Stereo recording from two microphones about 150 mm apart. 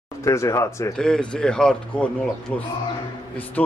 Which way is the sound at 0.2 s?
20° left (ahead or behind).